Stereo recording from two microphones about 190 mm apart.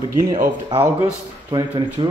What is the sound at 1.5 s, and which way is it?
Speech, 20° right (ahead or behind).